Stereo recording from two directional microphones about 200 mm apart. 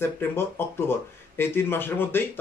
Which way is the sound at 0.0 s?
10° left (ahead or behind).